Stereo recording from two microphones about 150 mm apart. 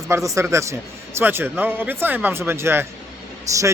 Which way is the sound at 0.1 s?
20° right (ahead or behind).